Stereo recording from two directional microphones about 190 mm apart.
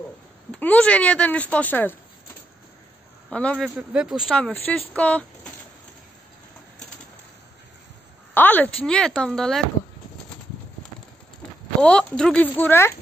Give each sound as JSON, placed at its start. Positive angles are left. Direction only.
{"t": 0.5, "sound": "speech", "side_deg": 5}
{"t": 3.3, "sound": "speech", "side_deg": 5}
{"t": 8.4, "sound": "a woman's voice", "side_deg": 10}
{"t": 11.8, "sound": "speech", "side_deg": 5}